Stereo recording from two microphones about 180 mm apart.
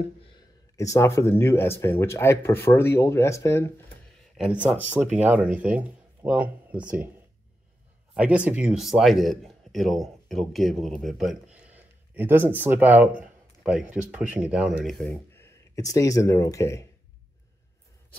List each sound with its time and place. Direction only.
0.7 s speech: 15° left (ahead or behind)
4.4 s speech: 5° right (ahead or behind)
8.1 s speech: 5° right (ahead or behind)
15.0 s speech: 15° left (ahead or behind)